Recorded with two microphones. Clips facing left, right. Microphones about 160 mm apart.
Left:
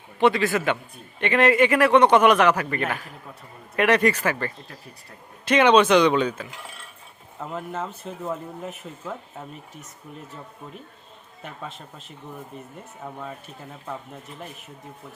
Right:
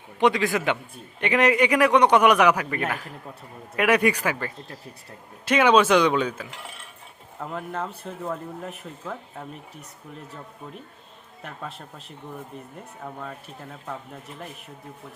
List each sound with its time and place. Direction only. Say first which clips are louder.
0.2 s speech: left 1 dB; 15° right (ahead or behind); by 9.5 s 5° left (ahead or behind)
11.4 s speech: even; centre (ahead or behind)